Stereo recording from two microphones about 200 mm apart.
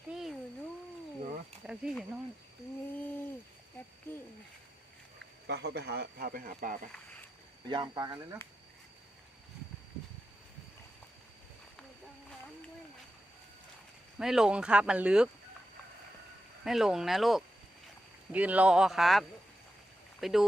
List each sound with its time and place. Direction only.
0.1 s a sound: centre (ahead or behind)
1.6 s wild animals: 5° right (ahead or behind)
5.5 s speech: 55° right (ahead or behind)
7.7 s speech: 20° right (ahead or behind)
14.2 s speech: 5° right (ahead or behind)
16.6 s speech: centre (ahead or behind)